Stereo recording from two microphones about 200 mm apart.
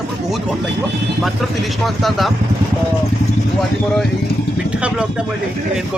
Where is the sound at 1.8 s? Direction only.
Centre (ahead or behind).